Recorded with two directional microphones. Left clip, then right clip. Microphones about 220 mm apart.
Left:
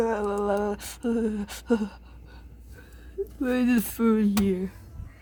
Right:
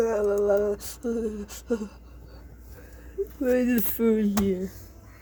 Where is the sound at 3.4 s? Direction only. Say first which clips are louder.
Right 2 dB; 25° left (ahead or behind).